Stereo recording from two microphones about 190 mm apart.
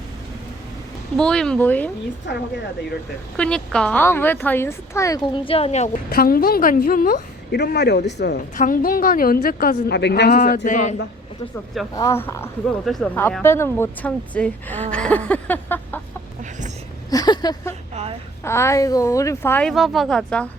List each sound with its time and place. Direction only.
1.1 s speech: 5° left (ahead or behind)
2.3 s speech: 65° left (ahead or behind)
3.3 s speech: 5° left (ahead or behind); by 5.9 s 35° left (ahead or behind)
6.1 s a woman's voice: 50° left (ahead or behind)
8.5 s a woman's voice: 45° left (ahead or behind); by 10.3 s 60° left (ahead or behind)
10.3 s a man's voice: 40° left (ahead or behind)
11.9 s speech: 15° left (ahead or behind)
12.8 s speech: centre (ahead or behind)
14.8 s a sound: 5° left (ahead or behind)
16.4 s a sound: 40° right (ahead or behind)
17.1 s a sound: 20° left (ahead or behind)
18.4 s speech: 15° left (ahead or behind)